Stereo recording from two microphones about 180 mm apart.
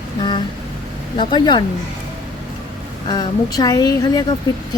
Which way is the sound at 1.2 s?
25° left (ahead or behind).